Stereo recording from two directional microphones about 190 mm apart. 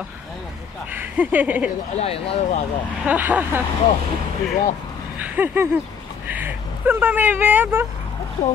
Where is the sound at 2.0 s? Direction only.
30° left (ahead or behind).